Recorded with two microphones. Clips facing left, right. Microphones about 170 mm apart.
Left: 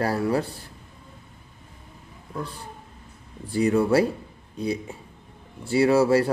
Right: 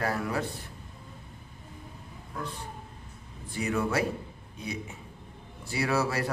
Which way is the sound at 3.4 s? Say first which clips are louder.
Left 9 dB; 35° left (ahead or behind).